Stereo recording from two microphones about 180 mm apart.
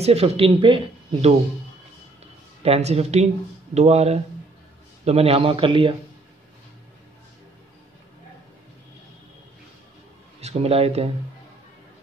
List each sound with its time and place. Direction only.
0.0 s speech: 35° right (ahead or behind)
2.6 s speech: 35° right (ahead or behind)
10.4 s speech: 35° right (ahead or behind)